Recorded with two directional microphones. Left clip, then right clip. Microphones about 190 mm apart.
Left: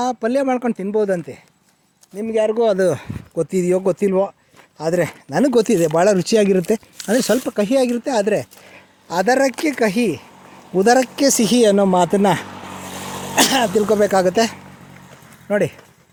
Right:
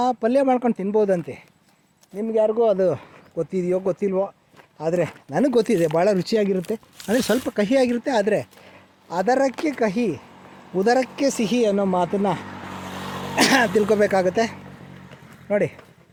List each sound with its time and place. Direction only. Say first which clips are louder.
0.0 s speech: even; 20° left (ahead or behind)
2.6 s speech: left 3 dB; 40° left (ahead or behind)
4.8 s speech: left 3 dB; 30° left (ahead or behind)